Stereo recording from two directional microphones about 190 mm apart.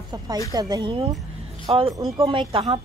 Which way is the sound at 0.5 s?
20° right (ahead or behind).